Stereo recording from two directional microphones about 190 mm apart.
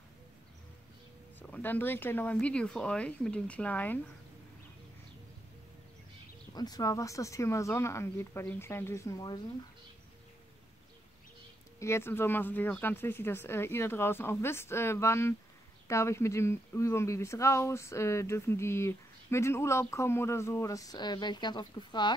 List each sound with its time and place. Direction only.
1.5 s speech: 10° left (ahead or behind)
6.5 s speech: 20° left (ahead or behind)
11.8 s speech: 15° left (ahead or behind)